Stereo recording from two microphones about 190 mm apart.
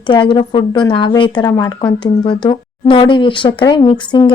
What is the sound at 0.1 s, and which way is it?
A woman's voice, 25° left (ahead or behind).